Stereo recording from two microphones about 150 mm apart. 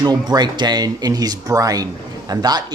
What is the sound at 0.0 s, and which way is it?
Speech, 30° right (ahead or behind).